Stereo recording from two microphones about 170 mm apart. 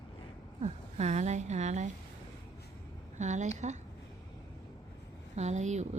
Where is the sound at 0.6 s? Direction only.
40° right (ahead or behind).